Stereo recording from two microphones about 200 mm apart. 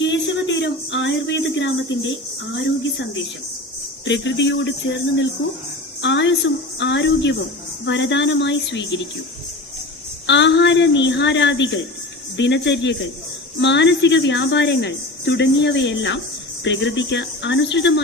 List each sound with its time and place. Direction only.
0.0 s a sound: 65° left (ahead or behind)
4.0 s a woman's voice: 60° left (ahead or behind)
6.0 s a woman's voice: 60° left (ahead or behind)
10.2 s a woman's voice: 60° left (ahead or behind)